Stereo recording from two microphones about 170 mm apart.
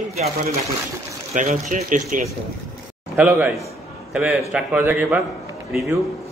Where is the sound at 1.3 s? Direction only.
50° right (ahead or behind).